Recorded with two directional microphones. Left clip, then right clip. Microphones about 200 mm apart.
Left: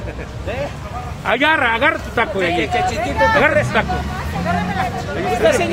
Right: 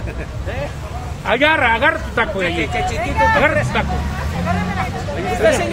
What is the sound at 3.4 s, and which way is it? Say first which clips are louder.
Speech: left 1 dB; 15° left (ahead or behind).